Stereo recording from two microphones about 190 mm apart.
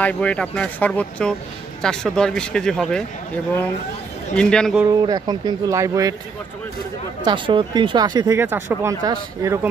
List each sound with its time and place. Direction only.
0.0 s speech: 5° left (ahead or behind)
4.4 s speech: 5° left (ahead or behind)
4.8 s speech: 20° right (ahead or behind)
7.2 s speech: 25° right (ahead or behind)